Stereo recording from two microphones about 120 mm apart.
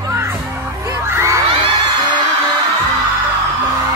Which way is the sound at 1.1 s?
25° right (ahead or behind).